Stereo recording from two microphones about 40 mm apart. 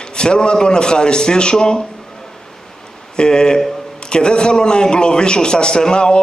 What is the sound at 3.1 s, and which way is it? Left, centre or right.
A man's voice, left.